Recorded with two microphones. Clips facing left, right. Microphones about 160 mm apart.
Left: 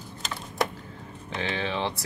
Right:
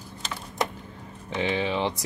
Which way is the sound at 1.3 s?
15° right (ahead or behind).